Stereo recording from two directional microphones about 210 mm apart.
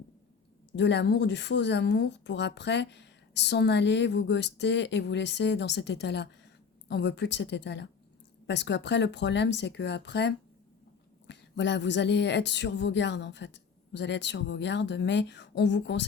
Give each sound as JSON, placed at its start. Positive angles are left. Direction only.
{"t": 0.8, "sound": "a woman's voice", "side_deg": 55}